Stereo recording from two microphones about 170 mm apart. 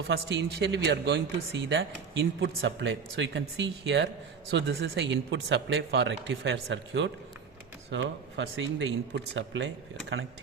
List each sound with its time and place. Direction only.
0.1 s speech: 90° right